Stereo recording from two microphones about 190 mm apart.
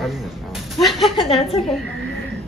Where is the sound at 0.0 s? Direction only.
Centre (ahead or behind).